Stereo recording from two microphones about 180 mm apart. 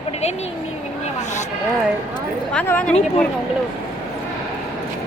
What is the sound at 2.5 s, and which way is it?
Speech, 5° left (ahead or behind).